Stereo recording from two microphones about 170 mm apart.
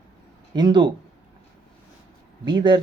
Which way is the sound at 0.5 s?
25° right (ahead or behind).